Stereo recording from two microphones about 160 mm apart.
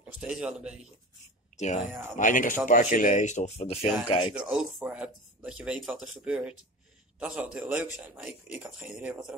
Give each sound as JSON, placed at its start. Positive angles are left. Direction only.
{"t": 0.2, "sound": "a man's voice", "side_deg": -5}
{"t": 1.6, "sound": "speech", "side_deg": 45}
{"t": 4.3, "sound": "speech", "side_deg": -5}